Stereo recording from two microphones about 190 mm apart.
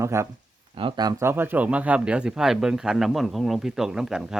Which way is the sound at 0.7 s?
25° right (ahead or behind).